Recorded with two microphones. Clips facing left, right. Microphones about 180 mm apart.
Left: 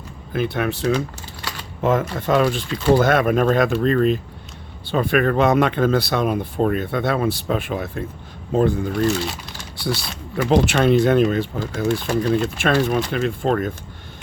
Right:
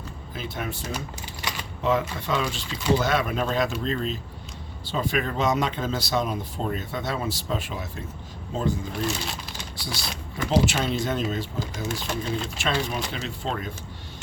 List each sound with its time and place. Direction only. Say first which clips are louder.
0.3 s speech: left 11 dB; 65° left (ahead or behind)
0.9 s typing: left 9 dB; 15° right (ahead or behind)
1.8 s speech: left 5 dB; 50° left (ahead or behind)